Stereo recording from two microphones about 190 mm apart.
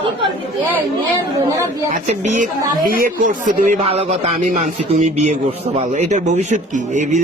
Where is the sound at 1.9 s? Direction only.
40° right (ahead or behind).